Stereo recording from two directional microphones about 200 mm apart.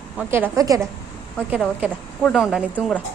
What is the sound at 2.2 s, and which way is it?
Speech, centre (ahead or behind).